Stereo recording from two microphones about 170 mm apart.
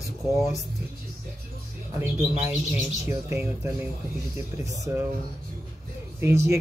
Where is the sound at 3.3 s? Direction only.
10° right (ahead or behind).